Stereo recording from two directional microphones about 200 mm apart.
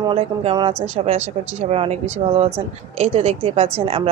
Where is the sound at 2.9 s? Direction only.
30° right (ahead or behind).